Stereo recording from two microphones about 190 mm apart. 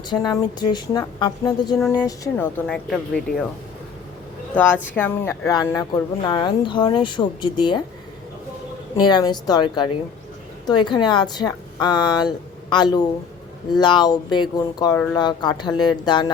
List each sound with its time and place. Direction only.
0.1 s a woman's voice: 20° left (ahead or behind)
2.6 s speech: 5° left (ahead or behind)
4.5 s speech: 10° left (ahead or behind)
9.0 s speech: 20° left (ahead or behind)